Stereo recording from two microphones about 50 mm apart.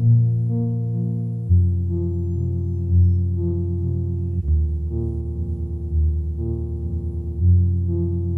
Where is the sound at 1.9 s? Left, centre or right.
Left.